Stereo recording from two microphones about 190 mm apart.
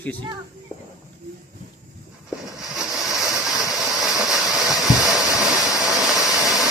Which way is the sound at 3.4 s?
Centre (ahead or behind).